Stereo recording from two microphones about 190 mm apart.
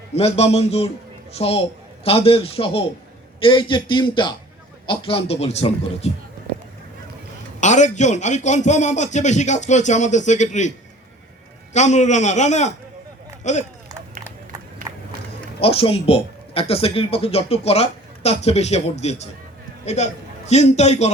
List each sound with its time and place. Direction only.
0.1 s a man's voice: 35° left (ahead or behind)
7.6 s speech: 40° left (ahead or behind)
11.7 s speech: 40° left (ahead or behind)
15.6 s a man's voice: 30° left (ahead or behind)